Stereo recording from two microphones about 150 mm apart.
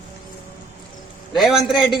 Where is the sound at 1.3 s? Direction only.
Centre (ahead or behind).